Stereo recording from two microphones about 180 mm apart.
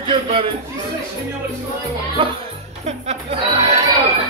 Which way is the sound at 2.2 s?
30° right (ahead or behind).